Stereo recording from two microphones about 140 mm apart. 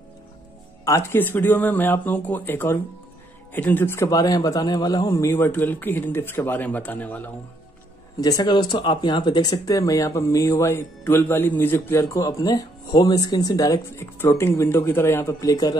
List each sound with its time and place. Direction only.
0.8 s a man's voice: 20° left (ahead or behind)
8.2 s speech: 30° left (ahead or behind)